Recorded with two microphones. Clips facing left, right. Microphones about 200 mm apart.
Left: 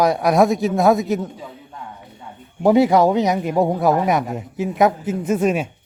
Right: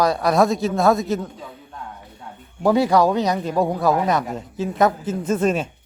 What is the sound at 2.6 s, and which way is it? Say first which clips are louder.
A man's voice: left 3 dB; 20° left (ahead or behind).